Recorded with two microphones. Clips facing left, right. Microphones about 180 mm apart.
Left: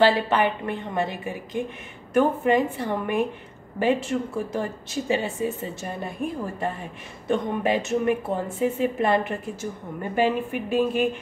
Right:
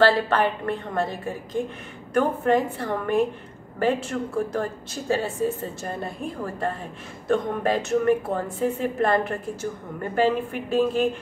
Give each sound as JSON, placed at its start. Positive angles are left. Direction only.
{"t": 0.0, "sound": "speech", "side_deg": 20}